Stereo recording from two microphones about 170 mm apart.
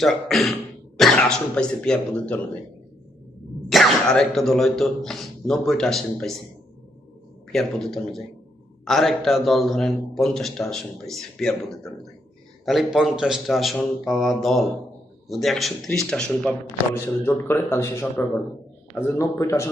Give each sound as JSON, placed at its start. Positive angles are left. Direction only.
{"t": 0.0, "sound": "a man's voice", "side_deg": 0}
{"t": 3.7, "sound": "a man's voice", "side_deg": 0}
{"t": 7.5, "sound": "a man's voice", "side_deg": 0}